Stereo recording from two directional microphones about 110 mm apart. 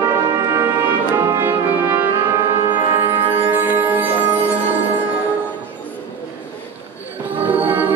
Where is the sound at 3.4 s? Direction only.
20° right (ahead or behind).